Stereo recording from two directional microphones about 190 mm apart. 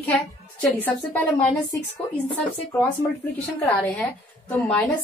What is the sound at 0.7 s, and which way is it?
Speech, 10° left (ahead or behind).